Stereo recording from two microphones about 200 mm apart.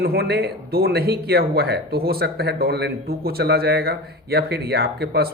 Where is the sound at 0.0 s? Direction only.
50° right (ahead or behind).